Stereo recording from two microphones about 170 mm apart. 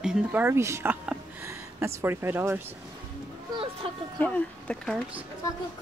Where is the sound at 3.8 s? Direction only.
35° right (ahead or behind).